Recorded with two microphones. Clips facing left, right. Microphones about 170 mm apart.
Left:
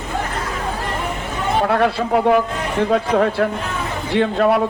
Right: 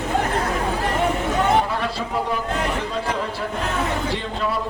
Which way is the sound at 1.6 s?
65° left (ahead or behind).